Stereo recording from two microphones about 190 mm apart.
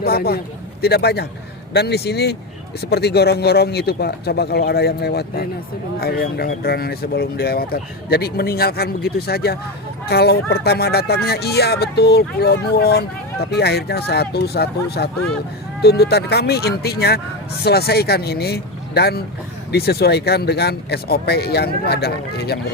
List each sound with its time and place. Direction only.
0.0 s speech: 55° left (ahead or behind)